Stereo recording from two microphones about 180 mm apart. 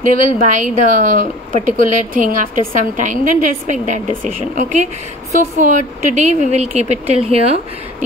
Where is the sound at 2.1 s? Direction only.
50° right (ahead or behind).